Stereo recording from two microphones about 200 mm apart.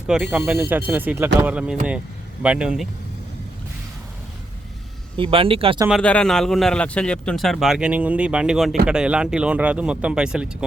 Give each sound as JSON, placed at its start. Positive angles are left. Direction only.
{"t": 0.1, "sound": "a man's voice", "side_deg": -5}
{"t": 5.1, "sound": "speech", "side_deg": -25}
{"t": 5.9, "sound": "a man's voice", "side_deg": 5}